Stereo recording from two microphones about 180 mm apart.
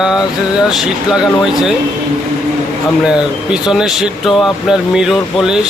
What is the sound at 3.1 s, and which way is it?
Speech, 5° right (ahead or behind).